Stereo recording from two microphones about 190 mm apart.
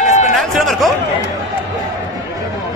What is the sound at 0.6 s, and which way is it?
Speech, centre (ahead or behind).